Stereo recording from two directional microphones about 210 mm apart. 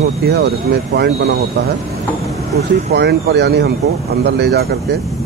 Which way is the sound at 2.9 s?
55° right (ahead or behind).